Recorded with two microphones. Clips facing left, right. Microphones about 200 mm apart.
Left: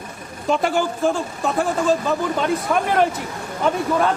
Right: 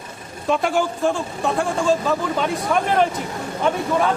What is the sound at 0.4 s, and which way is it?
Speech, centre (ahead or behind).